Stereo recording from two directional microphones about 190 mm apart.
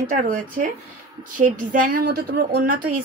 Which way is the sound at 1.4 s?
45° right (ahead or behind).